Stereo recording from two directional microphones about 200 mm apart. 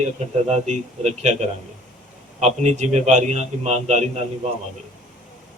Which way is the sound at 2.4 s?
35° right (ahead or behind).